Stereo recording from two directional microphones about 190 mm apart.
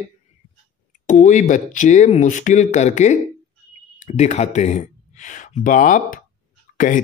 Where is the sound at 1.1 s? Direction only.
40° left (ahead or behind).